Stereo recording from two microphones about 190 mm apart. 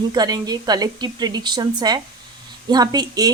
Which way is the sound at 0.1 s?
20° right (ahead or behind).